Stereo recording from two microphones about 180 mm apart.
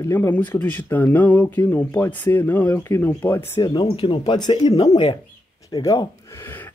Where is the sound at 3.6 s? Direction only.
25° left (ahead or behind).